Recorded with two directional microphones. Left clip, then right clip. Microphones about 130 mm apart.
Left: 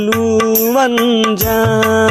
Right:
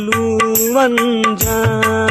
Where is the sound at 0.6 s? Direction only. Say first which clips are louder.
Right 2 dB; 40° left (ahead or behind).